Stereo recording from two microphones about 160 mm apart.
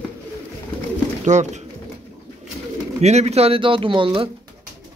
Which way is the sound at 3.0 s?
45° right (ahead or behind).